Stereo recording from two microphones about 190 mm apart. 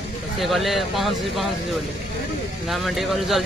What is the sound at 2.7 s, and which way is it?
Speech, centre (ahead or behind).